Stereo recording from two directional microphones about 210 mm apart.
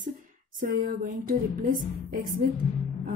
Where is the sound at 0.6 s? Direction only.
40° right (ahead or behind).